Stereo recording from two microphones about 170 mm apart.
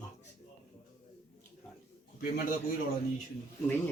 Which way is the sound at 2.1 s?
60° left (ahead or behind).